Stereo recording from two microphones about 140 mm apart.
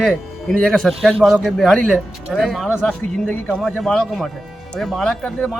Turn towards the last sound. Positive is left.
turn(degrees=5)  # may be behind; listen again after turning